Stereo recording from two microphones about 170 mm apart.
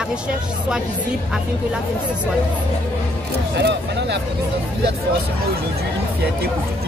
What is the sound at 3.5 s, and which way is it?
Speech, 85° right.